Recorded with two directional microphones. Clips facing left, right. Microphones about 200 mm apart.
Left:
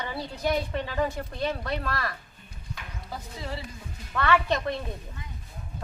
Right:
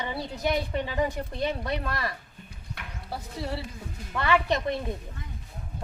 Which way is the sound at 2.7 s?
65° right (ahead or behind).